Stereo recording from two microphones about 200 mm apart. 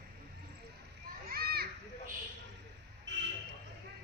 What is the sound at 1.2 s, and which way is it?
Children playing, 50° right (ahead or behind).